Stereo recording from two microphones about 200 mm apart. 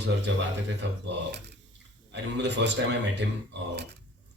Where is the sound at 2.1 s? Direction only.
60° right (ahead or behind).